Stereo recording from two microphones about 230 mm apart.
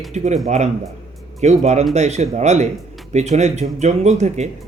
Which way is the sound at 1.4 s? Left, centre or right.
Right.